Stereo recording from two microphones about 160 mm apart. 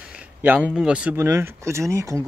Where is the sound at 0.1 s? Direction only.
10° right (ahead or behind).